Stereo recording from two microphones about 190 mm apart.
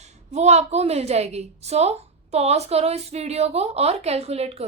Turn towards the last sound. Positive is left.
turn(degrees=-35)  # may be behind; listen again after turning